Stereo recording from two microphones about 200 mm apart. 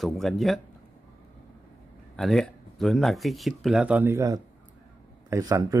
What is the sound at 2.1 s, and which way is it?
Speech, centre (ahead or behind).